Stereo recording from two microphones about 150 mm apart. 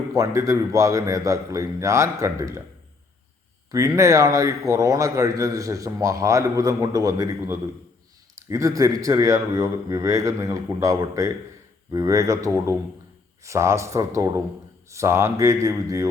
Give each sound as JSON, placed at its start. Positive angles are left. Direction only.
{"t": 0.1, "sound": "a man's voice", "side_deg": -20}
{"t": 3.7, "sound": "a man's voice", "side_deg": -20}